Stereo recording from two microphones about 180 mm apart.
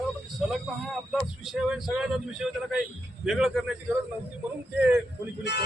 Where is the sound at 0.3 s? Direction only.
Centre (ahead or behind).